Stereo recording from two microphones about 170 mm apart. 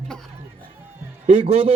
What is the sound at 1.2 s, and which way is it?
Speech, 40° right (ahead or behind).